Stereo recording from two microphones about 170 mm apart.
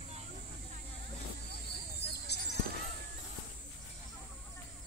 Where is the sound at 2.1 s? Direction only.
80° left.